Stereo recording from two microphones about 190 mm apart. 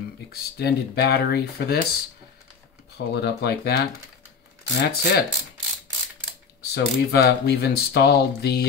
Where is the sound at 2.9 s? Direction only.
60° left (ahead or behind).